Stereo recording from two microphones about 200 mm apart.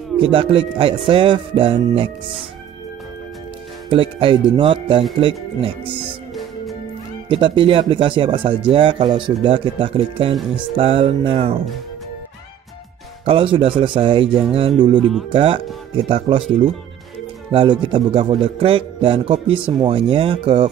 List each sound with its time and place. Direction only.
0.2 s a man's voice: 25° right (ahead or behind)
3.9 s a man's voice: 25° right (ahead or behind)
7.2 s a man's voice: 25° right (ahead or behind)
13.2 s a man's voice: 25° right (ahead or behind)